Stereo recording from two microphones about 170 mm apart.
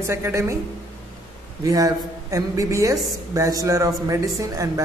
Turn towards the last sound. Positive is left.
turn(degrees=-20)  # may be behind; listen again after turning